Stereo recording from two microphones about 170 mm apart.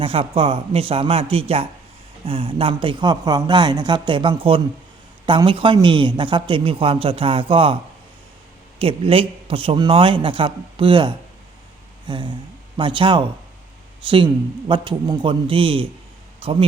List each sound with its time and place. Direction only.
0.0 s a man's voice: 35° right (ahead or behind)
8.8 s a man's voice: 30° right (ahead or behind)
14.7 s a man's voice: 25° right (ahead or behind)